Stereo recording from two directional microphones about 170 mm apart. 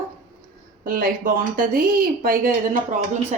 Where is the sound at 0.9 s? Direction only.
55° right (ahead or behind).